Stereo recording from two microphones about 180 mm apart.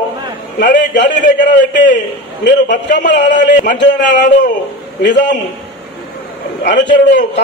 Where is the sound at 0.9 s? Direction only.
80° left.